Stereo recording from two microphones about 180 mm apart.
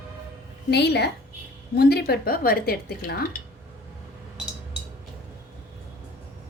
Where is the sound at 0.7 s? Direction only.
65° left (ahead or behind).